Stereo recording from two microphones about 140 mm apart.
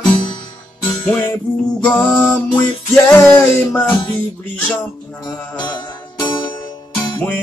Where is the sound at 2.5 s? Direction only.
10° left (ahead or behind).